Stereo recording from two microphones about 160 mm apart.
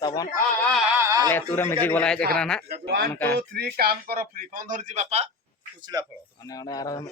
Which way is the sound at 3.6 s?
70° right (ahead or behind).